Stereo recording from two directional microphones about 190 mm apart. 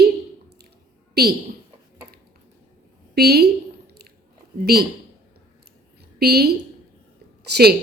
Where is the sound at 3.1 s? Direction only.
55° right (ahead or behind).